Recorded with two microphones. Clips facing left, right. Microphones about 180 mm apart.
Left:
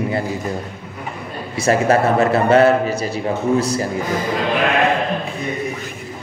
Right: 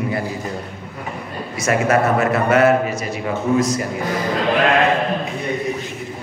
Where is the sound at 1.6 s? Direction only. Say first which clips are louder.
Left 2 dB; 30° left (ahead or behind).